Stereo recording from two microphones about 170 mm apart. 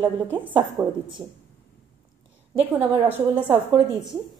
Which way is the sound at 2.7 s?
10° right (ahead or behind).